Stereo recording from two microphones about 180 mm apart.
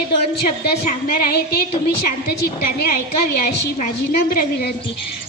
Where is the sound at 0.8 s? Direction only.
55° left (ahead or behind).